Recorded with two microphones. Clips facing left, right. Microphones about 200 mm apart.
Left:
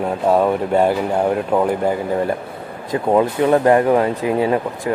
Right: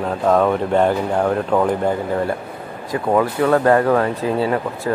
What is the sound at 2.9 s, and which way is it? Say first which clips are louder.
Speech: left 2 dB; 20° left (ahead or behind).